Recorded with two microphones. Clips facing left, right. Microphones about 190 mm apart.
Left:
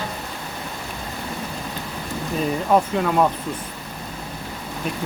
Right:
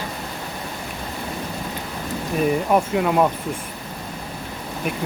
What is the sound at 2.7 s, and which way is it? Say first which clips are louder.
Speech: left 2 dB; 15° right (ahead or behind).